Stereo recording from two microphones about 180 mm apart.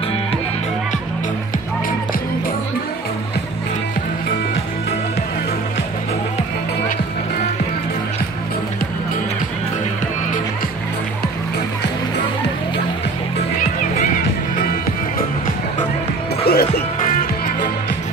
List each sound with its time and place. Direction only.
16.4 s music: 60° left (ahead or behind)